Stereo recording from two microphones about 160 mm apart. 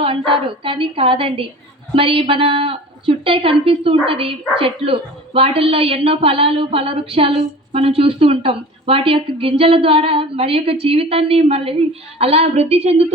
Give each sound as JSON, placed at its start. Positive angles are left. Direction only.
{"t": 0.3, "sound": "a woman's voice", "side_deg": -35}